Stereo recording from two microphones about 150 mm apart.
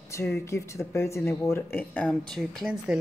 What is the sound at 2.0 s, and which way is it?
Speech, centre (ahead or behind).